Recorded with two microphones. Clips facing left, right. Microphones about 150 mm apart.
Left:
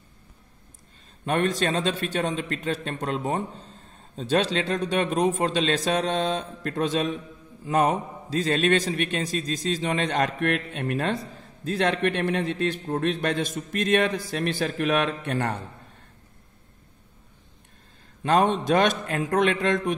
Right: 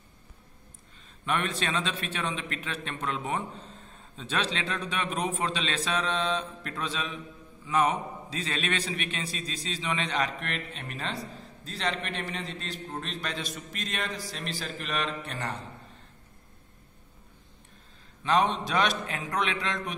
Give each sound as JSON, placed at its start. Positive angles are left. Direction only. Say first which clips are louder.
{"t": 1.2, "sound": "a man's voice", "louder": "left 6 dB", "side_deg": 40}
{"t": 18.2, "sound": "a man's voice", "louder": "left 4 dB", "side_deg": 50}